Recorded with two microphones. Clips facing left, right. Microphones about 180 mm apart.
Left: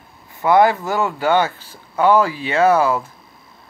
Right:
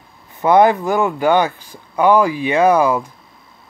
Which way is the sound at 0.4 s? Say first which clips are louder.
Right 2 dB; 20° right (ahead or behind).